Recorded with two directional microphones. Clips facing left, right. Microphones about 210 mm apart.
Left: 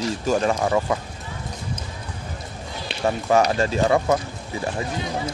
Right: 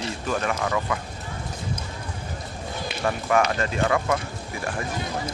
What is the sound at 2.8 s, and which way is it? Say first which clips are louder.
Speech: left 4 dB; 25° left (ahead or behind).